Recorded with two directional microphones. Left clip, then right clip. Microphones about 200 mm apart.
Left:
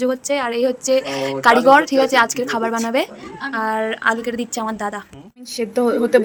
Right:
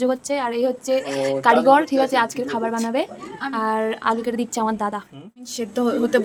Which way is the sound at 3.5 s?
10° right (ahead or behind).